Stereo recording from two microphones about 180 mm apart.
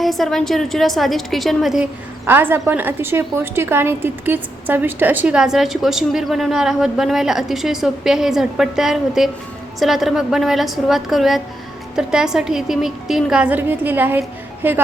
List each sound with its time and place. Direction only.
0.0 s a woman's voice: centre (ahead or behind)
2.2 s a woman's voice: 10° right (ahead or behind)